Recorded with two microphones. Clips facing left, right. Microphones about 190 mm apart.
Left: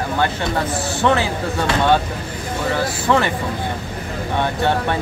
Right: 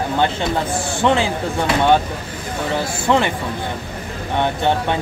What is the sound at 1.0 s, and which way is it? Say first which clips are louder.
Speech: even; 15° right (ahead or behind).